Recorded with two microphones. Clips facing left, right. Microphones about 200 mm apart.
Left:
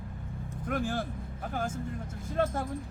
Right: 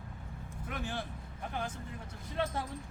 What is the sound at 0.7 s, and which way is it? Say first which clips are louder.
Speech: left 8 dB; 45° left (ahead or behind).